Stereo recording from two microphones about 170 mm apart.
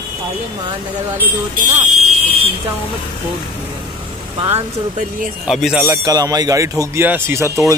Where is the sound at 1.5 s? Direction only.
50° right (ahead or behind).